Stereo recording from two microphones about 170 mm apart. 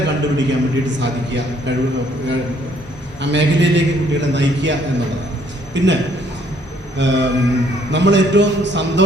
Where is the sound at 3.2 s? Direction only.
90° right.